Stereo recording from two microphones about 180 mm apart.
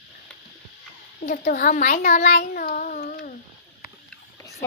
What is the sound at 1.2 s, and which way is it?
A child's voice, 50° left (ahead or behind).